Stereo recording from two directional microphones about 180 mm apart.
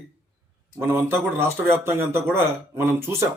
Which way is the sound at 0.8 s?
15° right (ahead or behind).